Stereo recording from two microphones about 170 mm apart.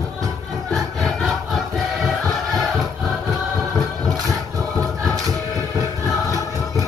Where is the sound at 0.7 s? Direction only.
Centre (ahead or behind).